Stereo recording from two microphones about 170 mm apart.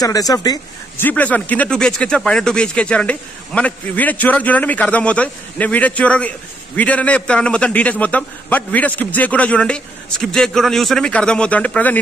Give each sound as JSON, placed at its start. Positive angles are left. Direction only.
{"t": 0.0, "sound": "speech", "side_deg": 20}
{"t": 1.0, "sound": "speech", "side_deg": 10}